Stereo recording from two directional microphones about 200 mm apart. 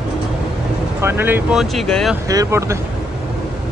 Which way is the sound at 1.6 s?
Centre (ahead or behind).